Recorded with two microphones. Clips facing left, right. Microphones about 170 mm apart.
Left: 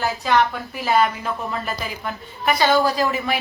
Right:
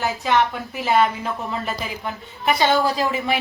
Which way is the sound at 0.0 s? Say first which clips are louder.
Left 1 dB; 20° right (ahead or behind).